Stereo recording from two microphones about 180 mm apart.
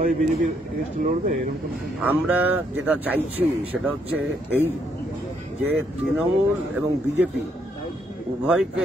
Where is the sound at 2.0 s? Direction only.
10° right (ahead or behind).